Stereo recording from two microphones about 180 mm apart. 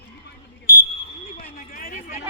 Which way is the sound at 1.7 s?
50° left (ahead or behind).